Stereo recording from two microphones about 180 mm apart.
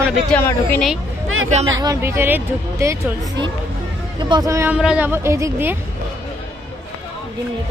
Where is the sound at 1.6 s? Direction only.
20° right (ahead or behind).